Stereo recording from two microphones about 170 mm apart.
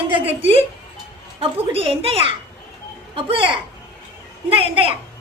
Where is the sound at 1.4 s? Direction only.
35° right (ahead or behind).